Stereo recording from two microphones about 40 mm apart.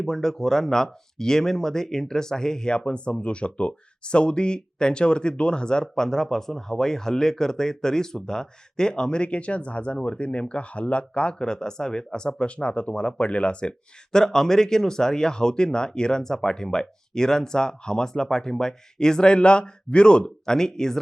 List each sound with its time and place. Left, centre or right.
0.0 s speech: centre